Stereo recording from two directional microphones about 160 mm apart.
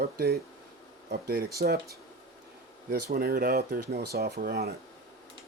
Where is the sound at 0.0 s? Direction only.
80° right.